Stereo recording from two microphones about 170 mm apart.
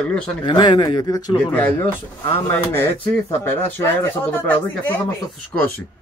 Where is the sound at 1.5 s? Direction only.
10° left (ahead or behind).